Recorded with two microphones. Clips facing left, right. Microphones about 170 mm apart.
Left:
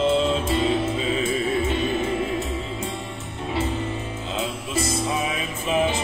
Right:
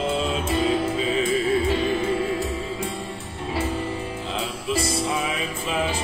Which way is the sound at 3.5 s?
20° left (ahead or behind).